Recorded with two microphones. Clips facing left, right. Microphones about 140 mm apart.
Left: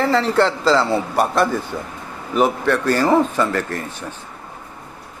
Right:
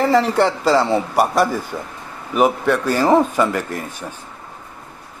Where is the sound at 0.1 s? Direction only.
15° right (ahead or behind).